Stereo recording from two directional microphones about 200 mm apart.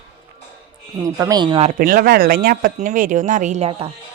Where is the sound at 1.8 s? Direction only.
45° right (ahead or behind); by 3.9 s 30° right (ahead or behind).